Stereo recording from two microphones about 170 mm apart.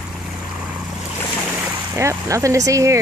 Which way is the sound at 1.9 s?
15° right (ahead or behind).